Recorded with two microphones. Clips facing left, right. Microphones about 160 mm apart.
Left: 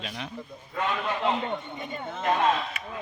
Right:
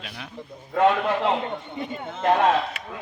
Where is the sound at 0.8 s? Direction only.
75° right (ahead or behind).